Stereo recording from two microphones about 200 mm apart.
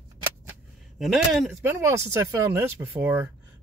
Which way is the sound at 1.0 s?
Centre (ahead or behind).